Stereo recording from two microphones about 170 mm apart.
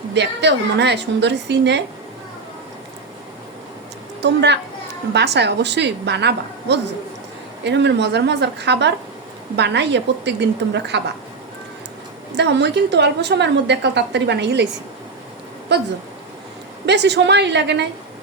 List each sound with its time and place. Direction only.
0.1 s a woman's voice: 90° right
4.2 s a woman's voice: 90° right
5.1 s a woman's voice: 80° right
12.3 s a woman's voice: 90° right
15.7 s a woman's voice: 90° right